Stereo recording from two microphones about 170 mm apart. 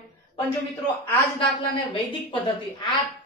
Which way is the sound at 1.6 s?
30° left (ahead or behind).